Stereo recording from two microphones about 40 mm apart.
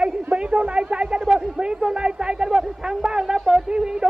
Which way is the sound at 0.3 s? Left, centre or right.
Right.